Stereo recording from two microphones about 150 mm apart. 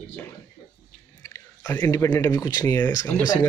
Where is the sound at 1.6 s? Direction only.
20° left (ahead or behind).